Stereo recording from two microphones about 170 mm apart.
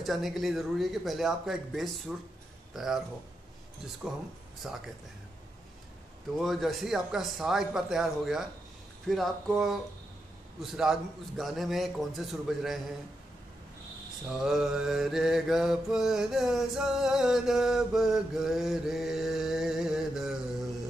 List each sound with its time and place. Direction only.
0.0 s mantra: centre (ahead or behind)
2.7 s speech: centre (ahead or behind)
4.6 s mantra: 5° right (ahead or behind)
6.3 s mantra: centre (ahead or behind)
14.2 s mantra: 5° right (ahead or behind)